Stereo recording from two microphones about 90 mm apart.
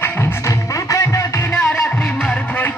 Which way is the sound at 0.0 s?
30° left (ahead or behind).